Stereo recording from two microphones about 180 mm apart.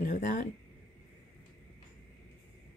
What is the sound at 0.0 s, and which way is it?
Speech, 45° left (ahead or behind).